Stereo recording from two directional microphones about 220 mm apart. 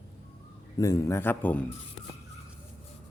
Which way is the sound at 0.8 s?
15° left (ahead or behind).